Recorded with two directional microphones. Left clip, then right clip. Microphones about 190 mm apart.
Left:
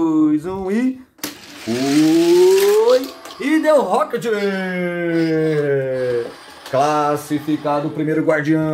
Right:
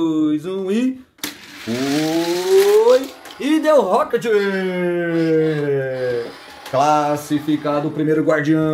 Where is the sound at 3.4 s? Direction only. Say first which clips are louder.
Even; 10° right (ahead or behind).